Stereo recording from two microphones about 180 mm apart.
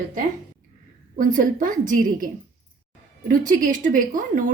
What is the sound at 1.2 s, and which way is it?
A woman's voice, 45° right (ahead or behind).